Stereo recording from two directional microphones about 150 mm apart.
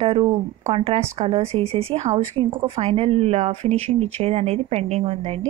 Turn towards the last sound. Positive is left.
turn(degrees=-40)  # may be behind; listen again after turning